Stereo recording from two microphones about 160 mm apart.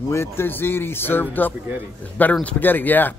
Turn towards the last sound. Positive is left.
turn(degrees=10)  # may be behind; listen again after turning